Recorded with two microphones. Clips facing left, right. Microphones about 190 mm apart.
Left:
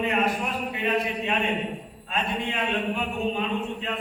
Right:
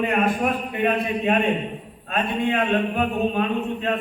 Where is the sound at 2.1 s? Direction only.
55° right (ahead or behind).